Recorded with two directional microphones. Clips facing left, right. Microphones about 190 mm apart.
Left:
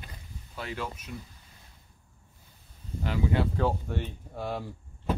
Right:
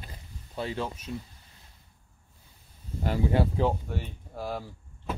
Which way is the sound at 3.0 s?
45° right (ahead or behind).